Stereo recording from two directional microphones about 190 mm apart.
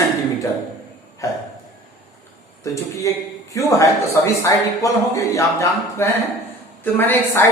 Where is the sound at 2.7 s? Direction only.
15° left (ahead or behind).